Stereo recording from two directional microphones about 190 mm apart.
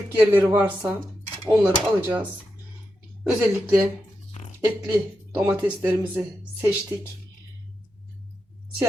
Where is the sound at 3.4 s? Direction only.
15° right (ahead or behind).